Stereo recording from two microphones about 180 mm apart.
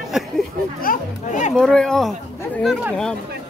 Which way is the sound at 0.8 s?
45° left (ahead or behind).